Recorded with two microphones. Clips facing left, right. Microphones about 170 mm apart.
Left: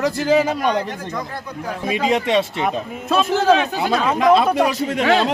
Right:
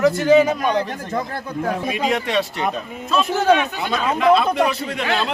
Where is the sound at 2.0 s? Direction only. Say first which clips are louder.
Left 4 dB; 25° left (ahead or behind).